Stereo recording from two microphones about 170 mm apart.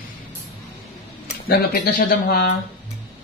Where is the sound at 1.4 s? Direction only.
65° left (ahead or behind).